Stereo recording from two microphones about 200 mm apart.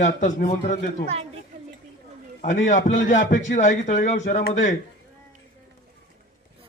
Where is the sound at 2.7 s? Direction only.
35° left (ahead or behind).